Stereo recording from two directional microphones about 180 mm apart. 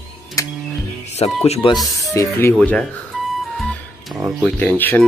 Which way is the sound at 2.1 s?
15° left (ahead or behind).